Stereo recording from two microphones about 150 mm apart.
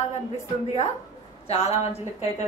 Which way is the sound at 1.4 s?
45° left (ahead or behind).